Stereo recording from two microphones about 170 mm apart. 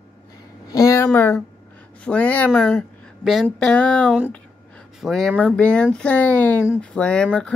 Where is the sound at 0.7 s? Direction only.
20° left (ahead or behind).